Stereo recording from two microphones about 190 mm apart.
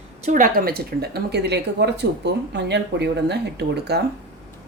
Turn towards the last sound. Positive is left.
turn(degrees=-60)  # may be behind; listen again after turning